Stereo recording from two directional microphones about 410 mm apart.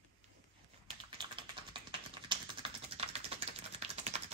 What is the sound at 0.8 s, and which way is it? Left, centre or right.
Typing, centre.